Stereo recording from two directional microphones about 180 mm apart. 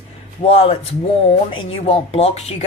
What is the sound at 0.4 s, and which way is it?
Speech, 30° left (ahead or behind).